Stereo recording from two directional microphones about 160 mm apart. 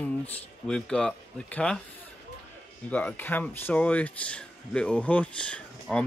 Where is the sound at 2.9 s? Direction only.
10° left (ahead or behind).